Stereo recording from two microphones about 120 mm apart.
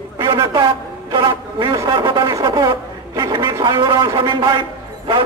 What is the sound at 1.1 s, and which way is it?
Music, 40° right (ahead or behind).